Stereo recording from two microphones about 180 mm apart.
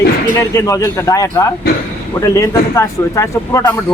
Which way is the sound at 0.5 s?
15° left (ahead or behind).